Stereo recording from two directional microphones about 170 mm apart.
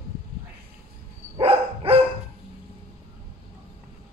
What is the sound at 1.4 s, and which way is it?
Dog, 35° right (ahead or behind).